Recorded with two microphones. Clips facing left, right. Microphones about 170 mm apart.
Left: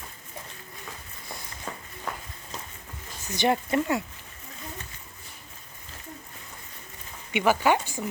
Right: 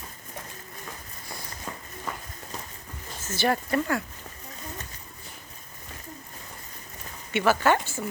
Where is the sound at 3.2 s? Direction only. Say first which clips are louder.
Left 1 dB; 15° left (ahead or behind).